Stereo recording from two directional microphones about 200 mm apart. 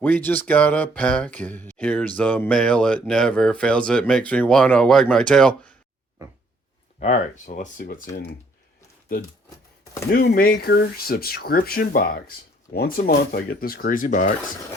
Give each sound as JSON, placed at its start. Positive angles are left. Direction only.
{"t": 0.0, "sound": "speech", "side_deg": 10}
{"t": 7.0, "sound": "speech", "side_deg": 40}
{"t": 10.1, "sound": "speech", "side_deg": 50}